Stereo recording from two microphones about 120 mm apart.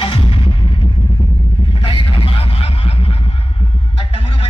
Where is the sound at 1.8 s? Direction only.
45° left (ahead or behind).